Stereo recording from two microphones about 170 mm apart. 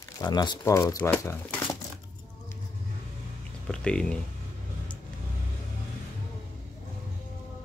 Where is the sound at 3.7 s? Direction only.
5° left (ahead or behind).